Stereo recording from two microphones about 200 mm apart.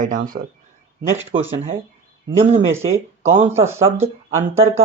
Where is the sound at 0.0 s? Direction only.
40° right (ahead or behind).